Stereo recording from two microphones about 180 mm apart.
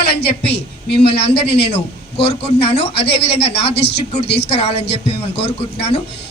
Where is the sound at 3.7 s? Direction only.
65° left (ahead or behind).